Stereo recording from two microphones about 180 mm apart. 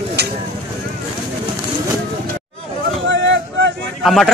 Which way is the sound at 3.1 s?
80° right.